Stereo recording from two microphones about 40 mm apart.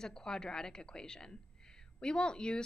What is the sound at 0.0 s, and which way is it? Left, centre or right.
A woman's voice, centre.